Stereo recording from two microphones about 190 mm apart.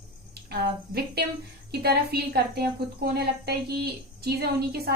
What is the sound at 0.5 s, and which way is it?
A woman's voice, 55° right (ahead or behind).